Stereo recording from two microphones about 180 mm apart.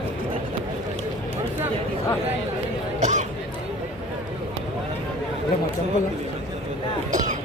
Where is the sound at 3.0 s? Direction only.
40° right (ahead or behind).